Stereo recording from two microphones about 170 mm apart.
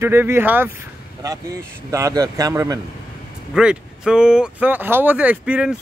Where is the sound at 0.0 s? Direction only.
15° right (ahead or behind).